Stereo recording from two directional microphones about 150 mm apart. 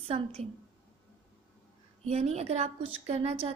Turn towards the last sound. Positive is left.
turn(degrees=-45)  # may be behind; listen again after turning